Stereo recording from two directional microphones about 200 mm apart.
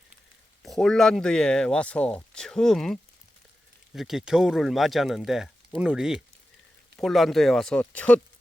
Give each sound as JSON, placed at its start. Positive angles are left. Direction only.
{"t": 0.6, "sound": "speech", "side_deg": 0}